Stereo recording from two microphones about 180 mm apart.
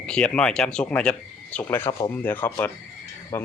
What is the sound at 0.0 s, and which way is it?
A man's voice, 5° left (ahead or behind).